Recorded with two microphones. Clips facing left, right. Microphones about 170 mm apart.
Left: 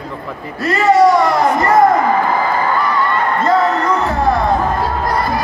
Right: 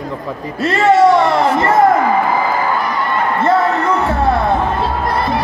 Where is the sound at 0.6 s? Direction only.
25° right (ahead or behind).